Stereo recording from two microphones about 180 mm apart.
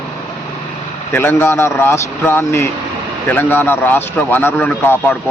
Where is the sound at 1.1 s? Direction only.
15° left (ahead or behind).